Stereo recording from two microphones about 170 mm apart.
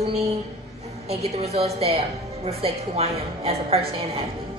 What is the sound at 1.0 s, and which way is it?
A woman's voice, 40° right (ahead or behind).